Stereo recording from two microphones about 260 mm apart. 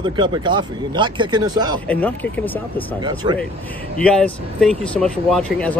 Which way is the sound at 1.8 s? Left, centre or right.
Centre.